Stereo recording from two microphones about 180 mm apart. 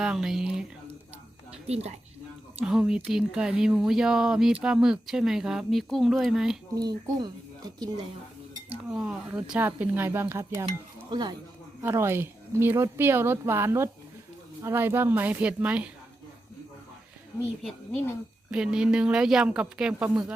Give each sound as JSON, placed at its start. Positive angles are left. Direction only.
{"t": 0.0, "sound": "speech", "side_deg": -5}
{"t": 1.6, "sound": "speech", "side_deg": -35}
{"t": 2.6, "sound": "speech", "side_deg": -5}
{"t": 6.7, "sound": "speech", "side_deg": -20}
{"t": 8.8, "sound": "speech", "side_deg": -5}
{"t": 11.8, "sound": "speech", "side_deg": -15}
{"t": 17.6, "sound": "speech", "side_deg": 0}